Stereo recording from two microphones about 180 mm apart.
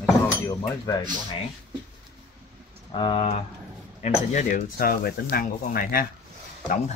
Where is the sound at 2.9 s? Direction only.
25° left (ahead or behind).